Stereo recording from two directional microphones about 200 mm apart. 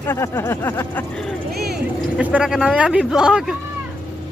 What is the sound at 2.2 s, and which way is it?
Speech, 5° right (ahead or behind).